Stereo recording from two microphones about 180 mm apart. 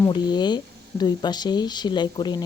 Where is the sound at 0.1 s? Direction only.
25° left (ahead or behind).